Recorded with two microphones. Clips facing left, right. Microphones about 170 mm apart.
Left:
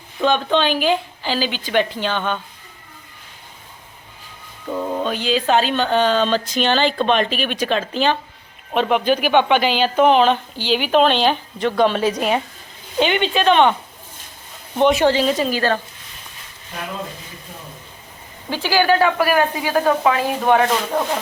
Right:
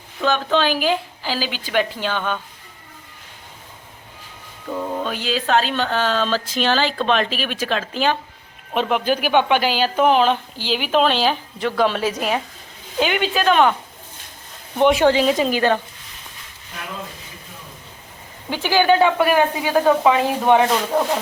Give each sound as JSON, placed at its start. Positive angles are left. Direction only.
{"t": 0.2, "sound": "a woman's voice", "side_deg": 0}
{"t": 4.7, "sound": "a sound", "side_deg": 5}
{"t": 5.0, "sound": "a woman's voice", "side_deg": -5}
{"t": 14.8, "sound": "speech", "side_deg": -10}
{"t": 18.5, "sound": "speech", "side_deg": -20}
{"t": 20.6, "sound": "speech", "side_deg": -10}